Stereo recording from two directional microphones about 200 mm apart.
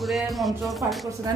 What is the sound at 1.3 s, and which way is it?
Speech, 20° right (ahead or behind).